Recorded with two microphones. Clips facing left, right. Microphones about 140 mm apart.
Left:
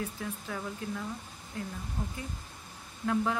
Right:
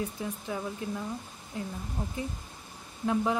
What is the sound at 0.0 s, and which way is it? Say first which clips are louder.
Speech: right 3 dB; 20° right (ahead or behind).